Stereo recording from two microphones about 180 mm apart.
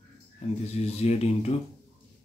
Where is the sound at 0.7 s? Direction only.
35° left (ahead or behind).